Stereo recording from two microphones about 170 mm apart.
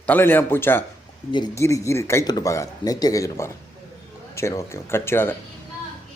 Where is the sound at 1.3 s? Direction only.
20° left (ahead or behind).